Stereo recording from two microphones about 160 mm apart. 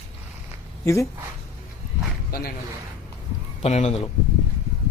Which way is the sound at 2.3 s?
70° left (ahead or behind).